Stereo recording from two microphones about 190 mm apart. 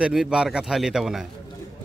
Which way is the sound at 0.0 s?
Centre (ahead or behind).